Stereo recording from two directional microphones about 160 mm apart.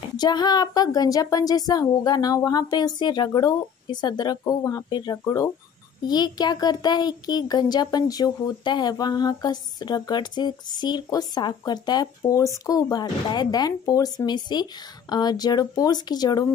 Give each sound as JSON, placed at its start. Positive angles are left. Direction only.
{"t": 0.2, "sound": "a child's voice", "side_deg": 25}